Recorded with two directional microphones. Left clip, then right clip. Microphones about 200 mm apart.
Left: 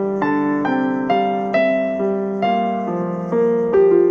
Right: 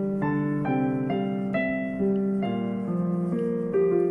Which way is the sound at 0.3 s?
40° left (ahead or behind).